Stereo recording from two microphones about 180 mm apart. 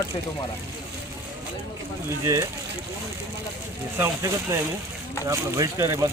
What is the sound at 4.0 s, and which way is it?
Speech, 15° right (ahead or behind).